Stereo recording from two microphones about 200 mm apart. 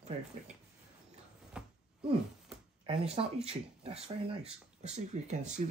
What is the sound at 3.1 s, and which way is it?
Speech, 30° right (ahead or behind).